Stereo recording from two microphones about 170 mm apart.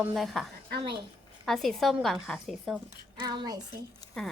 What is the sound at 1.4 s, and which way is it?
A woman's voice, centre (ahead or behind).